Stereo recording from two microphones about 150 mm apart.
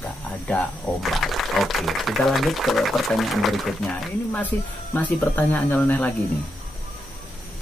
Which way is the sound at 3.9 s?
10° left (ahead or behind).